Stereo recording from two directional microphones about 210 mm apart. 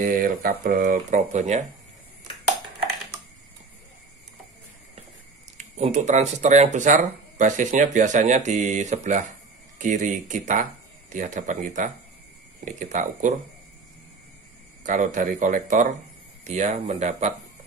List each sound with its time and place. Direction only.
0.0 s speech: 40° right (ahead or behind)
5.8 s speech: 35° right (ahead or behind)
14.8 s speech: 35° right (ahead or behind)